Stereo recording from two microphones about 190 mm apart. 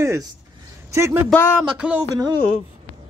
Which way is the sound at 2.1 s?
20° right (ahead or behind).